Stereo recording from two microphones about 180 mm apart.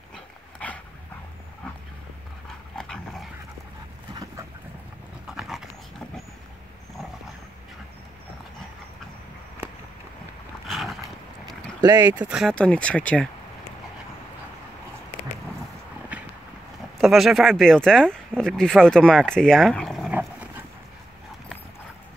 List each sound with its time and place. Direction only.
0.1 s dog: 5° left (ahead or behind)
2.8 s dog: centre (ahead or behind)
4.1 s a sound: 20° right (ahead or behind)
5.2 s pant: centre (ahead or behind)
10.7 s a sound: centre (ahead or behind)
11.8 s speech: 20° right (ahead or behind)
12.1 s speech: 5° right (ahead or behind)
16.1 s clip-clop: 5° right (ahead or behind)
17.0 s speech: centre (ahead or behind)
20.2 s dog: 10° right (ahead or behind)